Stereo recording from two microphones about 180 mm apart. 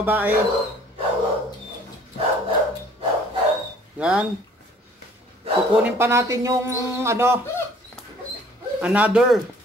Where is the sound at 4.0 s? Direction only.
5° right (ahead or behind).